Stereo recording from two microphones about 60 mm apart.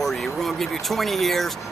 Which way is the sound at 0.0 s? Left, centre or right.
Centre.